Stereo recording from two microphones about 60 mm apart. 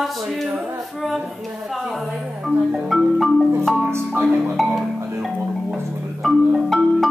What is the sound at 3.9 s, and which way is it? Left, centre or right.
Speech, right.